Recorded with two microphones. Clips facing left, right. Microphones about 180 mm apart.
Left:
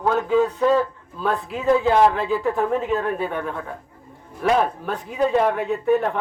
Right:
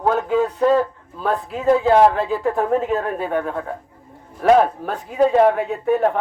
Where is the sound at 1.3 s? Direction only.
45° right (ahead or behind).